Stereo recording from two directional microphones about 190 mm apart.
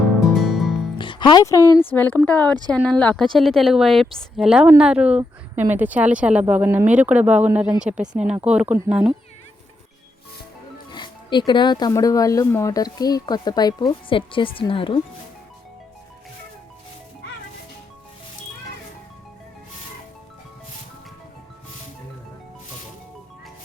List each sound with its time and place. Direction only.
0.3 s music: centre (ahead or behind)
0.9 s a woman's voice: 25° left (ahead or behind); by 9.1 s 5° right (ahead or behind)
10.9 s speech: 25° left (ahead or behind)